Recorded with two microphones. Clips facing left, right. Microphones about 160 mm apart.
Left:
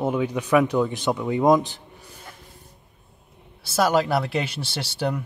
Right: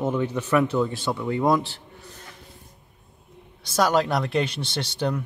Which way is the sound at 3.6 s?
5° left (ahead or behind).